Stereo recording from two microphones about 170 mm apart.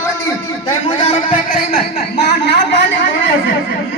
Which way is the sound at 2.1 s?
80° left.